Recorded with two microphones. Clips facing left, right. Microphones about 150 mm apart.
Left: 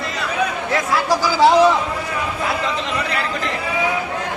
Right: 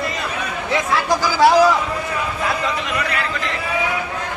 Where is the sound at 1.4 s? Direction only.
20° left (ahead or behind).